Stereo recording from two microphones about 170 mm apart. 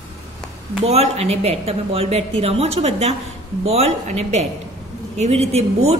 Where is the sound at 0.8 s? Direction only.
40° right (ahead or behind).